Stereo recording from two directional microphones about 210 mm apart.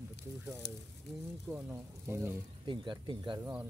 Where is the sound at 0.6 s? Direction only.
55° left (ahead or behind).